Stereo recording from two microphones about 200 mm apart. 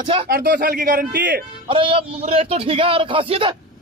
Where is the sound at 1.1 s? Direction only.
60° right (ahead or behind).